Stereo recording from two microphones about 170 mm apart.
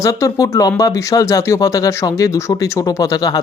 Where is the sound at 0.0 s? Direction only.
20° left (ahead or behind).